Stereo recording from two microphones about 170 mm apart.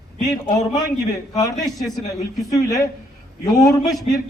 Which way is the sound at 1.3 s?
20° left (ahead or behind).